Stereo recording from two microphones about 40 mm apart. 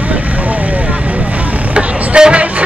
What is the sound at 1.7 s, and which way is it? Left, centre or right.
Vehicle, right.